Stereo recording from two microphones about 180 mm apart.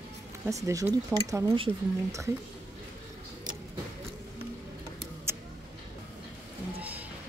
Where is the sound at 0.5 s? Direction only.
15° right (ahead or behind).